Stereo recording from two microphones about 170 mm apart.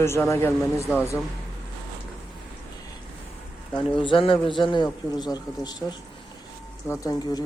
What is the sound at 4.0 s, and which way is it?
Speech, 30° left (ahead or behind).